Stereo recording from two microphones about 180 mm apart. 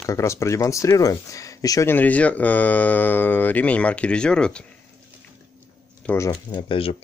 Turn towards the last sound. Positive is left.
turn(degrees=30)  # may be behind; listen again after turning